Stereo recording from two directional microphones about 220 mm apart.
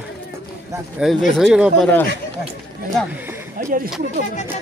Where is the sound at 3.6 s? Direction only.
35° right (ahead or behind).